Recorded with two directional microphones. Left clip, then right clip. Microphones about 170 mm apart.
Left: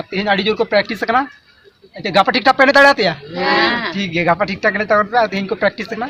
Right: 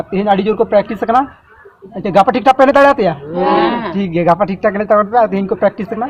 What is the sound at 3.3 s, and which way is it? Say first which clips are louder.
Speech: right 2 dB; 5° left (ahead or behind).